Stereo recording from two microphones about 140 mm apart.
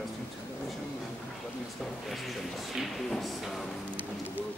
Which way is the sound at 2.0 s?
Centre (ahead or behind).